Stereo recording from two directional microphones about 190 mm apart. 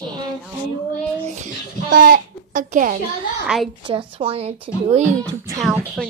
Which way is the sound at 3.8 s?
25° right (ahead or behind).